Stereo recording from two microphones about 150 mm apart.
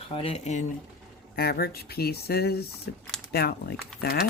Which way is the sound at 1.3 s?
90° left.